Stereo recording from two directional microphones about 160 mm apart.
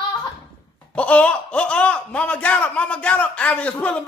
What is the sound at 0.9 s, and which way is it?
Speech, 10° left (ahead or behind).